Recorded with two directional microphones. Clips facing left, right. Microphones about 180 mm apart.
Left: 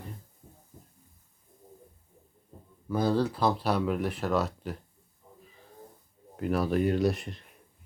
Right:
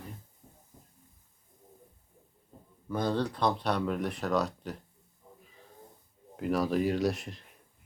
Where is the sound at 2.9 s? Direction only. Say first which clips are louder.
Left 4 dB; 5° left (ahead or behind).